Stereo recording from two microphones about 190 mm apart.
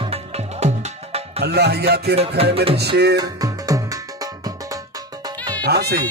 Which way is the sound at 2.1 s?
30° right (ahead or behind).